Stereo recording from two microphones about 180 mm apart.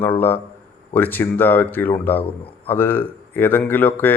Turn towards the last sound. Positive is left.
turn(degrees=10)  # may be behind; listen again after turning